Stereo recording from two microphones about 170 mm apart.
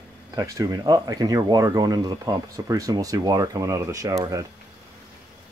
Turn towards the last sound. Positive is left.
turn(degrees=-20)  # may be behind; listen again after turning